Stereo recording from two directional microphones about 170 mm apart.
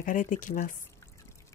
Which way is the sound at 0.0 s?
50° left (ahead or behind).